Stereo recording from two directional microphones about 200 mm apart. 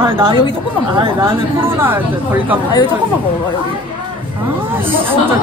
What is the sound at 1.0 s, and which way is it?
Speech, 15° right (ahead or behind).